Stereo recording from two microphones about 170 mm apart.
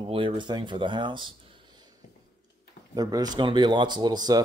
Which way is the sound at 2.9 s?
20° right (ahead or behind).